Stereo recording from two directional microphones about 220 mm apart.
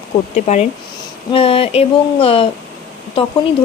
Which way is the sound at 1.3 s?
25° left (ahead or behind).